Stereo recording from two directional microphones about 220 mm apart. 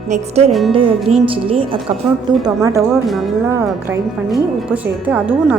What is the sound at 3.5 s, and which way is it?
Speech, 10° right (ahead or behind).